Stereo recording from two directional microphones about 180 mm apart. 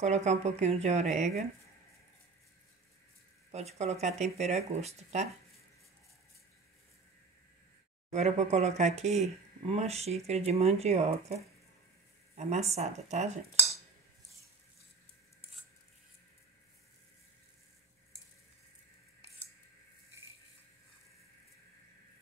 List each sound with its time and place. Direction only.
0.0 s speech: 40° right (ahead or behind)
3.5 s speech: 35° right (ahead or behind)
8.1 s speech: 40° right (ahead or behind)